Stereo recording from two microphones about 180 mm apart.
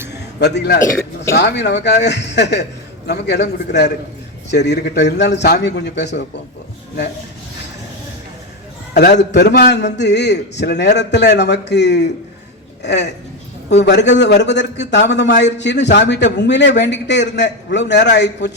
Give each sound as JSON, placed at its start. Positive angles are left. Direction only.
{"t": 0.1, "sound": "a sound", "side_deg": 70}
{"t": 1.3, "sound": "a man's voice", "side_deg": 70}
{"t": 8.9, "sound": "a man's voice", "side_deg": 70}